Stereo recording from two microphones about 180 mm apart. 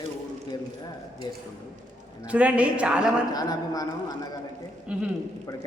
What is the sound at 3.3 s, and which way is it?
Speech, 20° left (ahead or behind).